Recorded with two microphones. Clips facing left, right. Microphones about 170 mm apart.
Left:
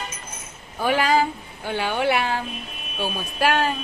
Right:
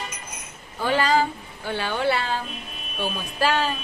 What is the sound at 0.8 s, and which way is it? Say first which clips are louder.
Speech: left 1 dB; 15° left (ahead or behind).